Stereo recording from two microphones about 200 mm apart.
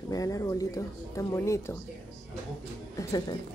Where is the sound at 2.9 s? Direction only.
20° left (ahead or behind).